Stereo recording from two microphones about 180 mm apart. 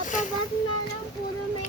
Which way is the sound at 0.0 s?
45° left (ahead or behind).